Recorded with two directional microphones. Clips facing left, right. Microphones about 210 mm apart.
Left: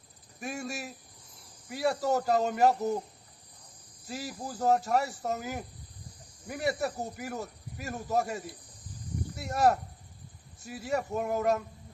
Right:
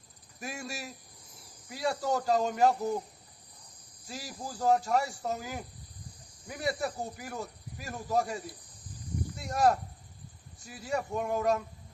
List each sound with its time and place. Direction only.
0.3 s speech: centre (ahead or behind)
4.1 s speech: 5° left (ahead or behind)
9.3 s cricket: 5° left (ahead or behind)
10.7 s speech: 5° left (ahead or behind)